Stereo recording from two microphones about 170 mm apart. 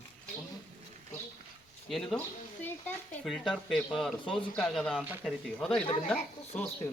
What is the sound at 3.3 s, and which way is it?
Speech, centre (ahead or behind).